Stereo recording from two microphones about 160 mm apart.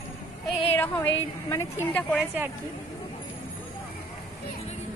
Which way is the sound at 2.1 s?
10° right (ahead or behind).